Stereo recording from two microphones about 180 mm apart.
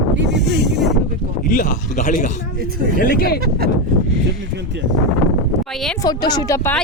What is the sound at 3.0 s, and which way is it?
Speech, 55° left (ahead or behind).